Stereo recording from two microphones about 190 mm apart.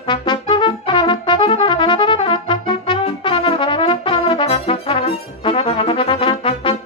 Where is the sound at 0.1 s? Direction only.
25° left (ahead or behind).